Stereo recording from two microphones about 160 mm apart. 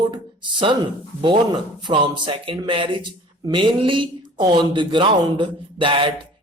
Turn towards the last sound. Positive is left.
turn(degrees=-30)  # may be behind; listen again after turning